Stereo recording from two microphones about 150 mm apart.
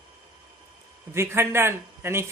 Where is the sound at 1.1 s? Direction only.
15° right (ahead or behind).